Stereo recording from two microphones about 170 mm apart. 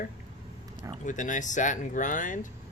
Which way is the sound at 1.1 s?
45° left (ahead or behind).